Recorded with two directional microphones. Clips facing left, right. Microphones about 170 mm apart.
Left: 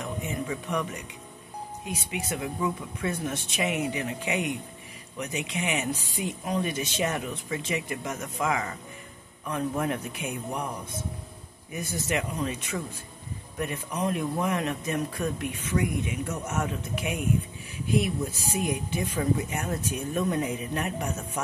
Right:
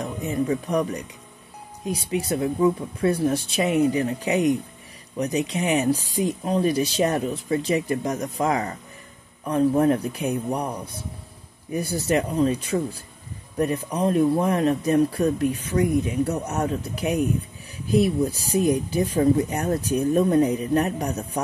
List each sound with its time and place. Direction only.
0.0 s speech: 35° right (ahead or behind)